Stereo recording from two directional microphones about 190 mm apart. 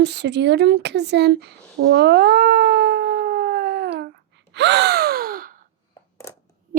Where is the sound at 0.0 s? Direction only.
65° right (ahead or behind).